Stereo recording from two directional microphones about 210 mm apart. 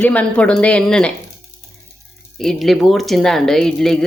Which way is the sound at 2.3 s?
Centre (ahead or behind).